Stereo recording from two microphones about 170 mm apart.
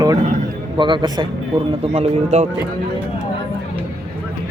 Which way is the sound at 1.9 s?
40° right (ahead or behind).